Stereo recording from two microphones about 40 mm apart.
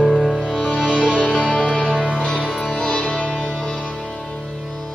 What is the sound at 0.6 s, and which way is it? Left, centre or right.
Music, left.